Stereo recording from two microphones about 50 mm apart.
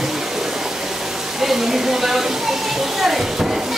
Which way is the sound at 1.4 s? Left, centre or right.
Centre.